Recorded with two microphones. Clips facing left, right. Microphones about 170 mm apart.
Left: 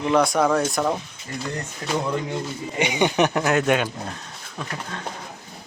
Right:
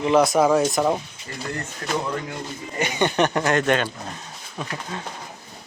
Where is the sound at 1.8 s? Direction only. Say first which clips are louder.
Left 2 dB; 15° left (ahead or behind).